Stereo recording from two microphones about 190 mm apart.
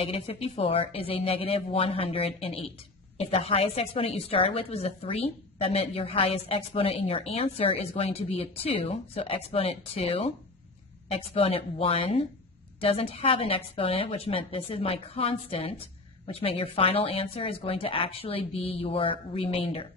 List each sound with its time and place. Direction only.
0.0 s a woman's voice: 30° left (ahead or behind)